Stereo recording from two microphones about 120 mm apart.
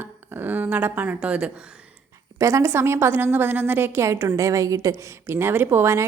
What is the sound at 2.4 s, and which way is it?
A woman's voice, 25° right (ahead or behind).